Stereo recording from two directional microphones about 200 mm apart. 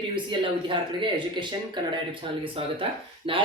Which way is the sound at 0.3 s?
25° right (ahead or behind).